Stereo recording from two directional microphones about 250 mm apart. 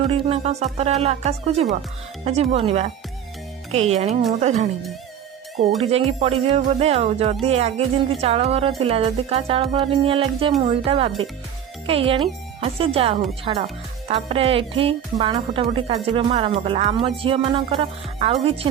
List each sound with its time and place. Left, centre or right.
0.1 s speech: right
5.8 s speech: right